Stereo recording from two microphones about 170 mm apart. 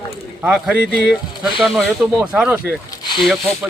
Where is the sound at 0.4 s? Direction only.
5° right (ahead or behind).